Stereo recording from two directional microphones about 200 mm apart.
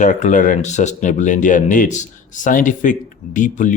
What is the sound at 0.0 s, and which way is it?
Speech, 35° left (ahead or behind).